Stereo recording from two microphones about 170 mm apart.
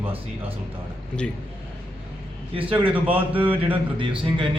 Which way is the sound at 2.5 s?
30° right (ahead or behind).